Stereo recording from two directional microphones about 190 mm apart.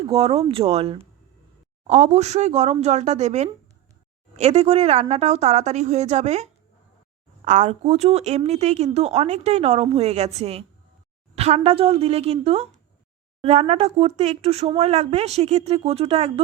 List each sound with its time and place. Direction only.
0.1 s a woman's voice: 30° right (ahead or behind)